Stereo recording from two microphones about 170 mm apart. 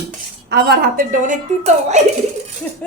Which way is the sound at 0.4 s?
70° right (ahead or behind).